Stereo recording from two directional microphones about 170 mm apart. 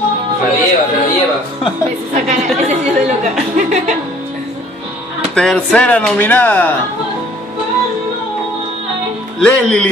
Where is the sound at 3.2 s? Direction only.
45° right (ahead or behind).